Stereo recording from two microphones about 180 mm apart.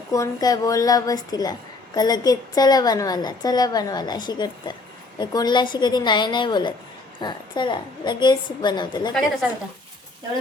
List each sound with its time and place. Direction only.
0.1 s a woman's voice: 20° left (ahead or behind)